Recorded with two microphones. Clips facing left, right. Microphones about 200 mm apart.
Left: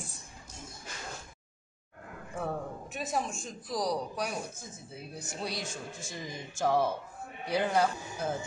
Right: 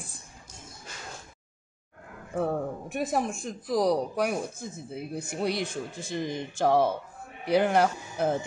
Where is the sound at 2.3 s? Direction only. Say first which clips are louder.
Right 7 dB; 50° right (ahead or behind).